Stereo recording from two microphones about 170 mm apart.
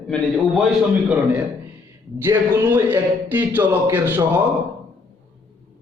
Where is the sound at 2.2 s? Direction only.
15° right (ahead or behind).